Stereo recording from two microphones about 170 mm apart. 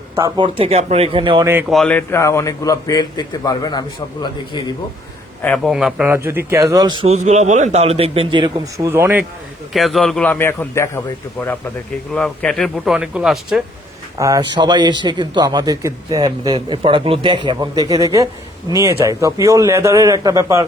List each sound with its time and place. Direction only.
0.4 s a man's voice: 40° right (ahead or behind)
1.7 s a man's voice: 5° left (ahead or behind); by 4.6 s 25° left (ahead or behind)
5.4 s a man's voice: 10° left (ahead or behind)
5.7 s a man's voice: 5° right (ahead or behind); by 7.1 s 25° right (ahead or behind)
7.1 s a man's voice: 40° right (ahead or behind)
8.9 s a man's voice: 15° right (ahead or behind)
9.7 s a man's voice: centre (ahead or behind)
14.2 s a man's voice: 20° right (ahead or behind)